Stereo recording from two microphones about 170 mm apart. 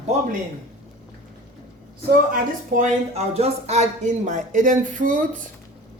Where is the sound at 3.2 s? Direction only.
40° right (ahead or behind).